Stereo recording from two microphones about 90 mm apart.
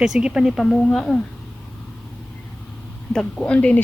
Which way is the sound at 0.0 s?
5° right (ahead or behind).